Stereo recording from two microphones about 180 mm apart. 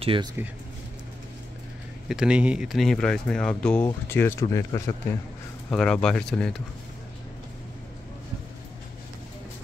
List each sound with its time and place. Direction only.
0.0 s speech: 30° right (ahead or behind)
2.0 s speech: 5° right (ahead or behind); by 4.9 s 15° left (ahead or behind)
5.7 s speech: 5° left (ahead or behind)